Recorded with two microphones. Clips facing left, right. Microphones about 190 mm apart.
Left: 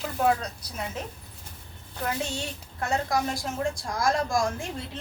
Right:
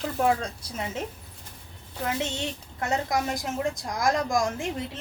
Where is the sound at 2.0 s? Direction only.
20° right (ahead or behind).